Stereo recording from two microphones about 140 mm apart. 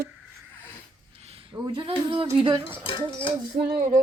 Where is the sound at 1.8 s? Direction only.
35° right (ahead or behind).